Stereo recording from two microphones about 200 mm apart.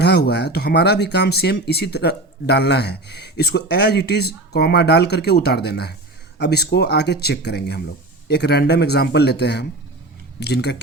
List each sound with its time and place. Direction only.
0.0 s speech: 55° left (ahead or behind)